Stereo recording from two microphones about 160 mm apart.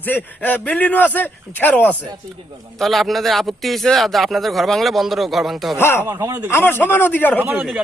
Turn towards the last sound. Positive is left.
turn(degrees=-10)  # may be behind; listen again after turning